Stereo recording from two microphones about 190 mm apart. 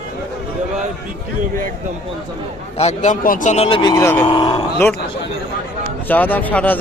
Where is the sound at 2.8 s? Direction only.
35° left (ahead or behind); by 4.2 s 15° left (ahead or behind).